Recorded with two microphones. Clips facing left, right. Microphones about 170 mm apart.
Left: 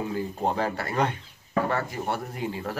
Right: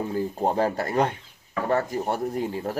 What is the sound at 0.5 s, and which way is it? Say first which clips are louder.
Dishes: right 4 dB; 40° right (ahead or behind).